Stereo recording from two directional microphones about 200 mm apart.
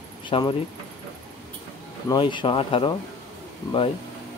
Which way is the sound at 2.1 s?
25° left (ahead or behind).